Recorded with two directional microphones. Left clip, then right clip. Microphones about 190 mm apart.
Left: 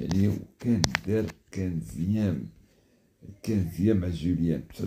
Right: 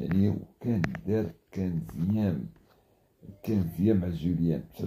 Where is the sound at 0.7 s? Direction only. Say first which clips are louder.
Left 4 dB; 20° left (ahead or behind).